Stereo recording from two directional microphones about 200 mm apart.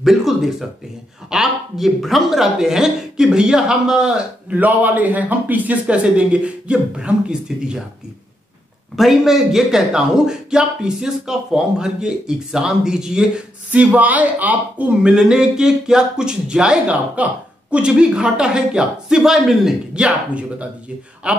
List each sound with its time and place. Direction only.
0.0 s a man's voice: centre (ahead or behind)
8.9 s a man's voice: centre (ahead or behind)